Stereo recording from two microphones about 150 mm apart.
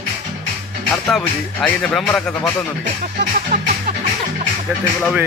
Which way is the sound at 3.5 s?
90° right.